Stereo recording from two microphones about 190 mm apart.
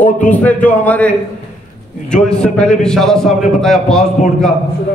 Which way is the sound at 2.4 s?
5° left (ahead or behind).